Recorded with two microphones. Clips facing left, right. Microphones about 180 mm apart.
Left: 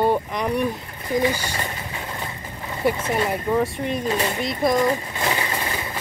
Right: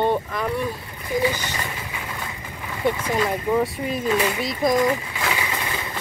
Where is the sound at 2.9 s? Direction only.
25° left (ahead or behind).